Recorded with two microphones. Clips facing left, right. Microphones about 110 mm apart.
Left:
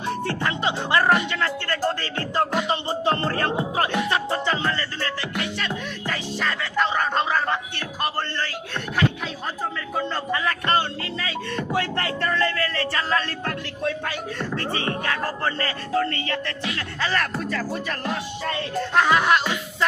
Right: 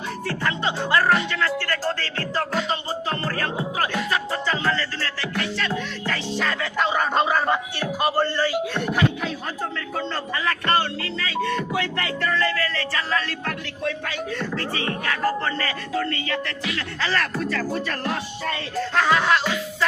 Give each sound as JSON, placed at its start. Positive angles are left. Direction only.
{"t": 0.3, "sound": "music", "side_deg": 20}
{"t": 6.3, "sound": "music", "side_deg": 0}
{"t": 11.2, "sound": "music", "side_deg": 25}
{"t": 14.5, "sound": "music", "side_deg": 25}
{"t": 18.9, "sound": "music", "side_deg": 15}